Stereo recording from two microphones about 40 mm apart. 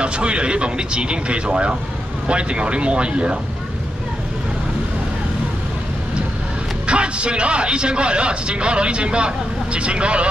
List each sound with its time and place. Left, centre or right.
0.0 s a man's voice: right
6.9 s a man's voice: right